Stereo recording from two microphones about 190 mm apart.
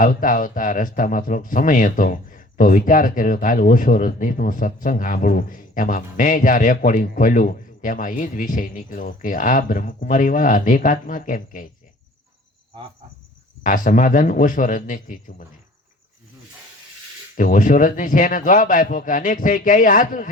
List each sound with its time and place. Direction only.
0.0 s speech: 45° left (ahead or behind)
13.6 s speech: 45° left (ahead or behind)
17.3 s speech: 45° left (ahead or behind)